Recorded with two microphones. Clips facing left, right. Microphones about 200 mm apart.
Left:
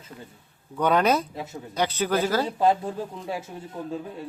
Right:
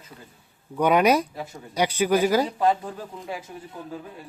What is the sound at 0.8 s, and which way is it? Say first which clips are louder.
Speech: right 2 dB; 15° right (ahead or behind).